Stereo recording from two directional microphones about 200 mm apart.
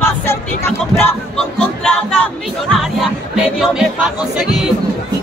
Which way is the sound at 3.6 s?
5° right (ahead or behind).